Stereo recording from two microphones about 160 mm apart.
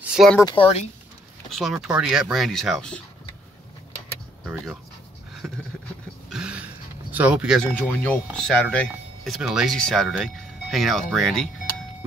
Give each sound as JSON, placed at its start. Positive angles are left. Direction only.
{"t": 0.0, "sound": "a sound", "side_deg": -5}
{"t": 0.4, "sound": "speech", "side_deg": 30}
{"t": 1.5, "sound": "speech", "side_deg": 0}
{"t": 5.4, "sound": "vehicle", "side_deg": -5}
{"t": 6.3, "sound": "a sound", "side_deg": -5}
{"t": 7.1, "sound": "speech", "side_deg": -10}
{"t": 7.7, "sound": "speech", "side_deg": 10}